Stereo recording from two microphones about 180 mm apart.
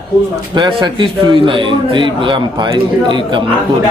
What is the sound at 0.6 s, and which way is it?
A man's voice, 25° right (ahead or behind).